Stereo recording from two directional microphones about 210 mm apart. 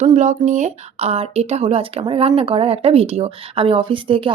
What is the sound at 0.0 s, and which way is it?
Speech, 35° right (ahead or behind).